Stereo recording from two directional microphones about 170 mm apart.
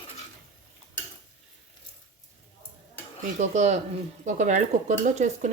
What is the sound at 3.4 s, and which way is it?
Speech, 45° right (ahead or behind).